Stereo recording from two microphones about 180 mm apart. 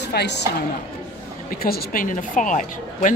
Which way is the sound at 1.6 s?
55° left (ahead or behind).